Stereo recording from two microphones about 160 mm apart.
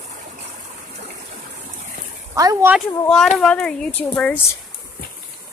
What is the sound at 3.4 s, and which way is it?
Speech, 5° left (ahead or behind).